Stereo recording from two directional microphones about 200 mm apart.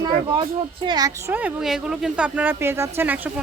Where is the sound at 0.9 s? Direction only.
20° right (ahead or behind).